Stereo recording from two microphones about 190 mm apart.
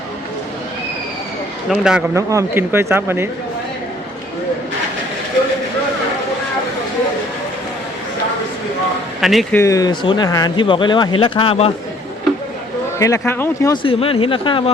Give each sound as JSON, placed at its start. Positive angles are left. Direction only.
{"t": 1.7, "sound": "a man's voice", "side_deg": -5}
{"t": 2.1, "sound": "speech", "side_deg": -15}
{"t": 9.2, "sound": "a man's voice", "side_deg": 0}
{"t": 9.6, "sound": "speech", "side_deg": 20}
{"t": 13.0, "sound": "speech", "side_deg": 15}
{"t": 13.8, "sound": "speech", "side_deg": 30}